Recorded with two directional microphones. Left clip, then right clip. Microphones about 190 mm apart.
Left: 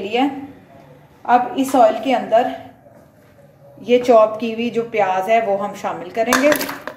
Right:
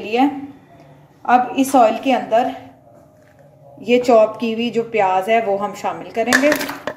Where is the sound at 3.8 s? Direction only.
10° right (ahead or behind).